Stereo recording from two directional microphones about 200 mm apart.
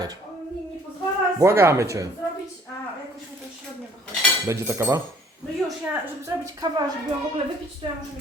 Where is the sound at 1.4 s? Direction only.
15° right (ahead or behind).